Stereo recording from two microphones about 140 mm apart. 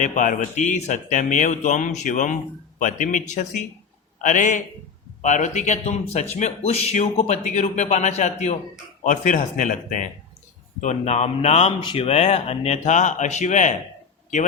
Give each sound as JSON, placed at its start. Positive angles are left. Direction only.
{"t": 0.0, "sound": "speech", "side_deg": 65}
{"t": 9.0, "sound": "a man's voice", "side_deg": 65}
{"t": 11.8, "sound": "speech", "side_deg": 40}